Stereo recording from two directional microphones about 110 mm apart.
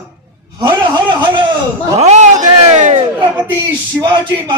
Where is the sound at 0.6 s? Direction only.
40° right (ahead or behind).